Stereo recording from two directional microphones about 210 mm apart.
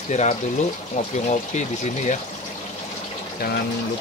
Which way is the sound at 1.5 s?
35° left (ahead or behind).